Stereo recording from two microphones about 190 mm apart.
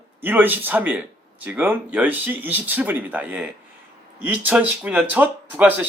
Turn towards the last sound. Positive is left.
turn(degrees=-10)  # may be behind; listen again after turning